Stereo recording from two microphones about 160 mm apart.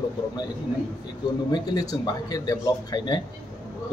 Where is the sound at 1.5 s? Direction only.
25° left (ahead or behind).